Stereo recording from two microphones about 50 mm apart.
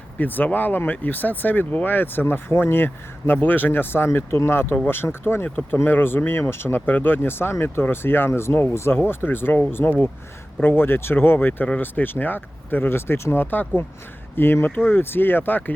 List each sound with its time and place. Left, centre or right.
0.2 s speech: left
8.3 s speech: left